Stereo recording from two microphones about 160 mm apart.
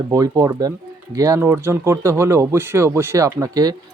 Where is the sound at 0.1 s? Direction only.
20° right (ahead or behind).